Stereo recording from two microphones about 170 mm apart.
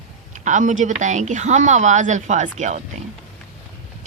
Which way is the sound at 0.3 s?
45° right (ahead or behind).